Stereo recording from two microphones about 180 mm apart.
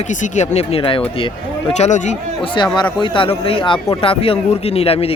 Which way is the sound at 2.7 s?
25° left (ahead or behind).